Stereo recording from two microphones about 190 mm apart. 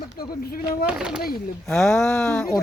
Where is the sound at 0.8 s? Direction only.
5° right (ahead or behind).